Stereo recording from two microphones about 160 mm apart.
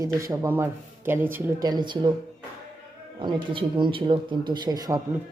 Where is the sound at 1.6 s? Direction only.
25° right (ahead or behind).